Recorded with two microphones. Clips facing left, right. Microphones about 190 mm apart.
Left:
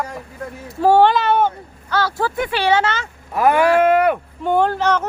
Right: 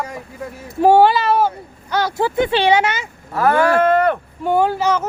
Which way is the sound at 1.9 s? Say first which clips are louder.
Right 2 dB; 20° right (ahead or behind).